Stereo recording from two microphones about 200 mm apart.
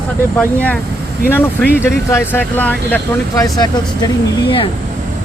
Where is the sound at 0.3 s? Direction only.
5° left (ahead or behind).